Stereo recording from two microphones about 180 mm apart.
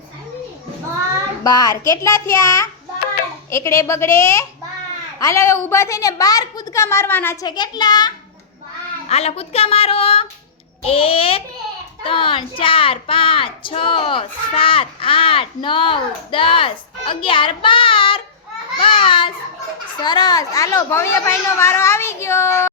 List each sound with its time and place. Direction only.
1.5 s a woman's voice: 20° left (ahead or behind)
7.4 s speech: 25° left (ahead or behind)
9.0 s a woman's voice: 35° left (ahead or behind); by 22.7 s 15° left (ahead or behind)